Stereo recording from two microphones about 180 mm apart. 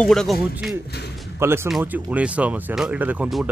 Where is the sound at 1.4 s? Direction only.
15° right (ahead or behind).